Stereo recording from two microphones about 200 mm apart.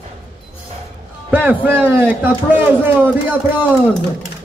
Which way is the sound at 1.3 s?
10° right (ahead or behind).